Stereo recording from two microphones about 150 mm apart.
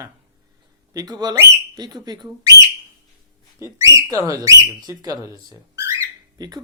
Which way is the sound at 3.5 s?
20° right (ahead or behind).